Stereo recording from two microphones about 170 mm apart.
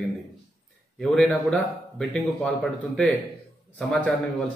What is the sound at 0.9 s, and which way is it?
A man's voice, centre (ahead or behind).